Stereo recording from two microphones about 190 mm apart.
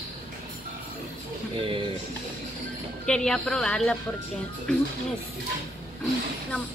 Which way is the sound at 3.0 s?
5° left (ahead or behind).